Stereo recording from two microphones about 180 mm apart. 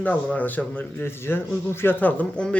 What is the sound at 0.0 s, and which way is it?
A man's voice, 10° left (ahead or behind).